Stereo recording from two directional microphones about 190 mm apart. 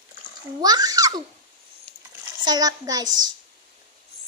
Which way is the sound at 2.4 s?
20° right (ahead or behind).